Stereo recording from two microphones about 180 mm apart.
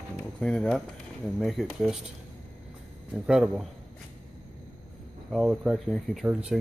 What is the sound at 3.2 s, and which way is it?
Speech, 5° right (ahead or behind).